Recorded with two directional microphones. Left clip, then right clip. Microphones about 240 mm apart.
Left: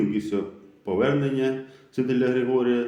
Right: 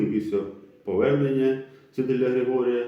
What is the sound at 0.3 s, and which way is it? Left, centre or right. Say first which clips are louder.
Speech: right 1 dB; left.